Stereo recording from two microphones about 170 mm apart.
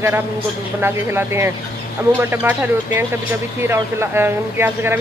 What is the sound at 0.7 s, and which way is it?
Speech, 15° right (ahead or behind).